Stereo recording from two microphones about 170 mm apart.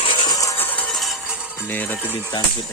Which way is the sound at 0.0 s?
30° left (ahead or behind).